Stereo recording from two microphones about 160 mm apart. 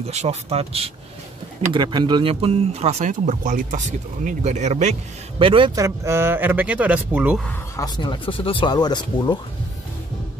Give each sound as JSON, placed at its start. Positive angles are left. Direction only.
{"t": 0.0, "sound": "speech", "side_deg": -45}
{"t": 5.4, "sound": "speech", "side_deg": -35}
{"t": 5.8, "sound": "speech", "side_deg": -20}
{"t": 7.7, "sound": "speech", "side_deg": 25}